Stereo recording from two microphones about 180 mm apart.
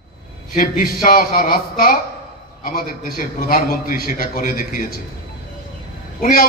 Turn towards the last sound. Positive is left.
turn(degrees=55)  # may be behind; listen again after turning